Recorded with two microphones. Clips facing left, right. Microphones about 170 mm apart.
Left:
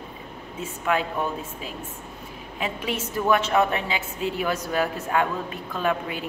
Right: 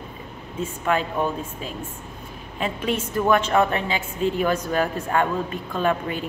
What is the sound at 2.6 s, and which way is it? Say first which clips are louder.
A woman's voice: right 4 dB; 5° left (ahead or behind).